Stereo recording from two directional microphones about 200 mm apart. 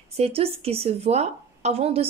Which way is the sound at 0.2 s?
30° right (ahead or behind).